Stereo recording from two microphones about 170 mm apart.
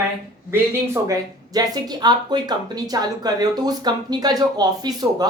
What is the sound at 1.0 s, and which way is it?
Speech, 20° right (ahead or behind).